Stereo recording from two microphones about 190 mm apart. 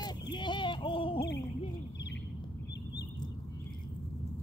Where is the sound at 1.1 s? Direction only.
65° left (ahead or behind).